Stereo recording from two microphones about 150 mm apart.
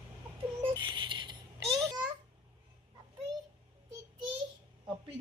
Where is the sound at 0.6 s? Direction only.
30° right (ahead or behind).